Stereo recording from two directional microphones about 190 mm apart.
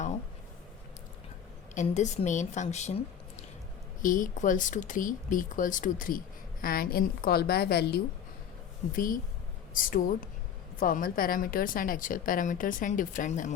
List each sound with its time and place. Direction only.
1.7 s speech: 40° left (ahead or behind); by 8.0 s 55° left (ahead or behind)
8.9 s speech: 45° left (ahead or behind)